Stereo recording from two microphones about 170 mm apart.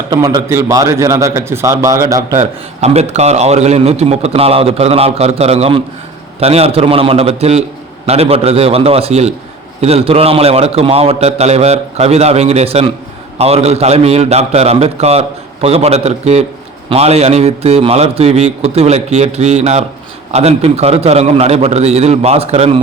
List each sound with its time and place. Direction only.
0.1 s a man's voice: 25° right (ahead or behind)
2.3 s a man's voice: 40° right (ahead or behind)